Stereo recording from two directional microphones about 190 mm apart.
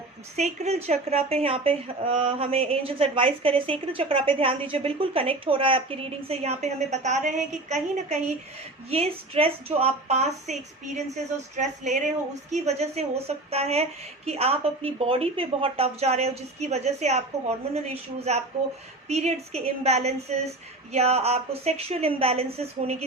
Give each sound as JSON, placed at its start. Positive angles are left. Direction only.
{"t": 0.3, "sound": "speech", "side_deg": -35}